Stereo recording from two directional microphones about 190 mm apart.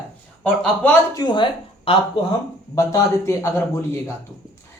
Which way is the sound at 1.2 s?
25° left (ahead or behind).